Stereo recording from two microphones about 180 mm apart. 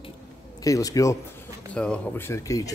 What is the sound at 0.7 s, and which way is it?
Speech, 20° left (ahead or behind).